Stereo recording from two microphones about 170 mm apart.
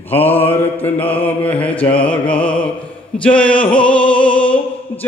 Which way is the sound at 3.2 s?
5° left (ahead or behind).